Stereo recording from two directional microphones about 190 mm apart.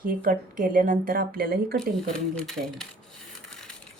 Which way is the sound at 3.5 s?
5° left (ahead or behind).